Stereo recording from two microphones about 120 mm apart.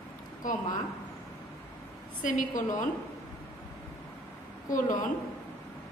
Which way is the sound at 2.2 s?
90° left.